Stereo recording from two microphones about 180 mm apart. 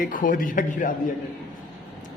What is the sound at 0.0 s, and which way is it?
Speech, 50° left (ahead or behind).